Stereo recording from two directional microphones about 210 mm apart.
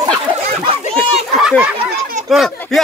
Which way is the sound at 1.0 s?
Centre (ahead or behind).